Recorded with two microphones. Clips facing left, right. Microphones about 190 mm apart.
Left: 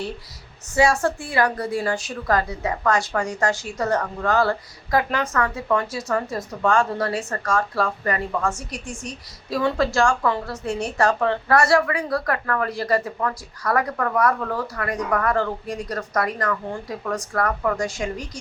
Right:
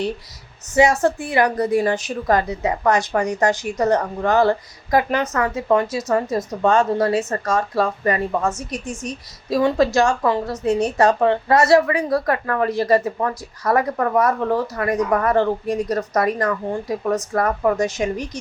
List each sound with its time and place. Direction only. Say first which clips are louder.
0.7 s a woman's voice: right 3 dB; 20° right (ahead or behind)